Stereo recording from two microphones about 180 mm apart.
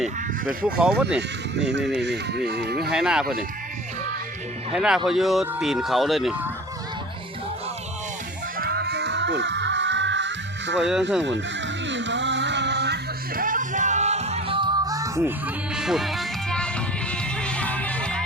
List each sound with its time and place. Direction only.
0.0 s speech: 5° right (ahead or behind)
2.5 s speech: 65° right (ahead or behind)
2.9 s speech: 5° right (ahead or behind)
4.7 s speech: 5° right (ahead or behind)
8.5 s music: 60° right (ahead or behind); by 10.8 s 80° right
10.8 s speech: 5° right (ahead or behind)
11.9 s music: 85° right; by 15.3 s 15° right (ahead or behind)
15.7 s music: centre (ahead or behind)